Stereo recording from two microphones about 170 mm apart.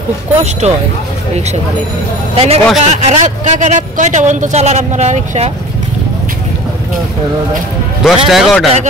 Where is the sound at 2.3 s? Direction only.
35° right (ahead or behind).